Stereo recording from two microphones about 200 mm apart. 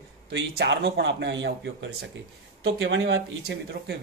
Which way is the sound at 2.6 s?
70° right (ahead or behind).